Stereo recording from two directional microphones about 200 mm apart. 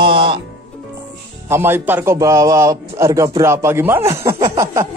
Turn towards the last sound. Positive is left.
turn(degrees=-15)  # may be behind; listen again after turning